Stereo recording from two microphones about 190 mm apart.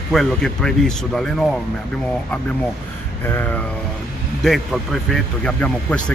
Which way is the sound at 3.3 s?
10° left (ahead or behind).